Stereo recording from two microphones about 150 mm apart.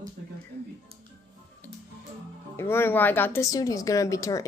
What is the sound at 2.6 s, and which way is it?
A woman's voice, 15° left (ahead or behind).